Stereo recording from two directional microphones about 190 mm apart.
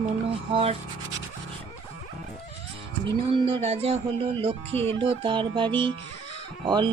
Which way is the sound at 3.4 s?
35° right (ahead or behind).